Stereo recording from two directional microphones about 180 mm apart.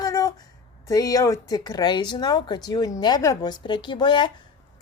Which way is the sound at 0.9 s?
20° left (ahead or behind).